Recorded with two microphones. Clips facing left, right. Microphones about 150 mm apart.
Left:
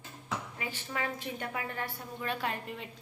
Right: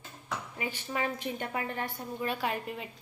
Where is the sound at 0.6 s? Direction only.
20° right (ahead or behind).